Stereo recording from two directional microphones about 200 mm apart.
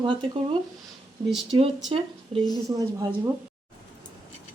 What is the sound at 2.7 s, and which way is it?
Speech, 15° right (ahead or behind).